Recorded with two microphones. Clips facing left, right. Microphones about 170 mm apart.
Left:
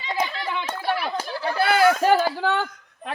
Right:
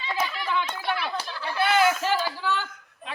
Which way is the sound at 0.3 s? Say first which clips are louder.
Right 1 dB; 25° left (ahead or behind).